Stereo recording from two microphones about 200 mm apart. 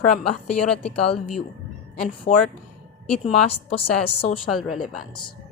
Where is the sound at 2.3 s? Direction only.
30° left (ahead or behind).